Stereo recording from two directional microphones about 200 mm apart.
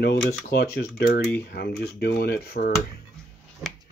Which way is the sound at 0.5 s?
55° left (ahead or behind).